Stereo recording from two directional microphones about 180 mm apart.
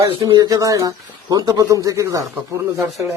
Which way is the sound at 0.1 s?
25° right (ahead or behind).